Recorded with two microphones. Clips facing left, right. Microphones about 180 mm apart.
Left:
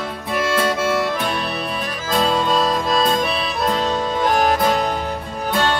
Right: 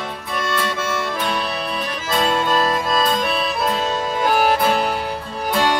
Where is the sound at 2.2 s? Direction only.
Centre (ahead or behind).